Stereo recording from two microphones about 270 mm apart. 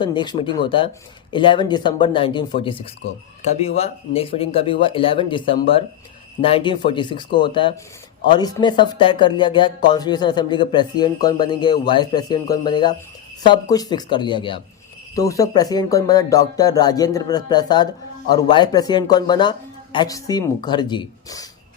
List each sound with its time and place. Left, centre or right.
0.0 s speech: centre